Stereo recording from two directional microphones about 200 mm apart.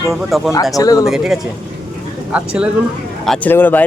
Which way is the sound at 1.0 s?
Centre (ahead or behind).